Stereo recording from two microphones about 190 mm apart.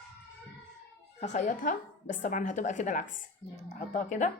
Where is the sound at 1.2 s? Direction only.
40° left (ahead or behind).